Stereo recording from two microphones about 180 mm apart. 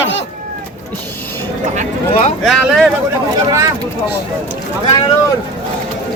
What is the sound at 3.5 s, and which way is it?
Speech, 20° right (ahead or behind).